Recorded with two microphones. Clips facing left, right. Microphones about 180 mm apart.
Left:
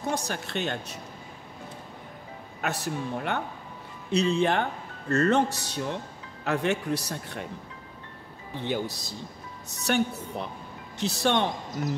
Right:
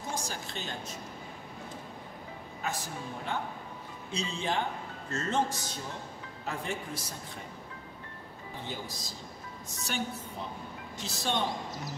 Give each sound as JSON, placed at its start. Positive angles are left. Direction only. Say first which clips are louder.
{"t": 0.0, "sound": "a man's voice", "louder": "left 7 dB", "side_deg": 65}
{"t": 2.6, "sound": "a man's voice", "louder": "left 7 dB", "side_deg": 70}
{"t": 8.6, "sound": "a man's voice", "louder": "left 12 dB", "side_deg": 70}